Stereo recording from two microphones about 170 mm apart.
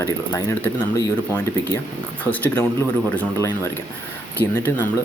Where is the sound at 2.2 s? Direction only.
10° left (ahead or behind).